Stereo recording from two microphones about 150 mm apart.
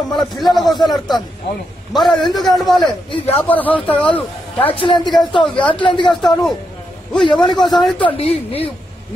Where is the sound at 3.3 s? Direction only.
10° left (ahead or behind).